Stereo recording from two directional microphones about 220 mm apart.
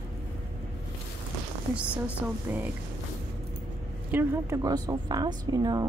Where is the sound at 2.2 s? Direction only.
10° right (ahead or behind).